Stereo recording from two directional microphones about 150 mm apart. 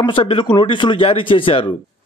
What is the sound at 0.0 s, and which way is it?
A man's voice, 35° left (ahead or behind).